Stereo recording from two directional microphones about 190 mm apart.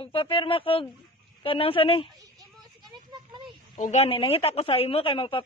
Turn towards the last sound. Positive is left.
turn(degrees=25)  # may be behind; listen again after turning